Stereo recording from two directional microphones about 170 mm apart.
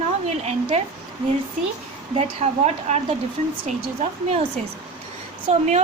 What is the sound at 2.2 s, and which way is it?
A woman's voice, 40° right (ahead or behind).